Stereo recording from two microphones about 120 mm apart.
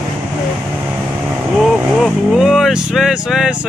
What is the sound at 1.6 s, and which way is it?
Speech, centre (ahead or behind).